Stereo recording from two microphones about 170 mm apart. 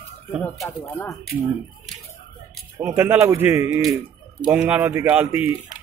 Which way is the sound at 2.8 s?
15° right (ahead or behind).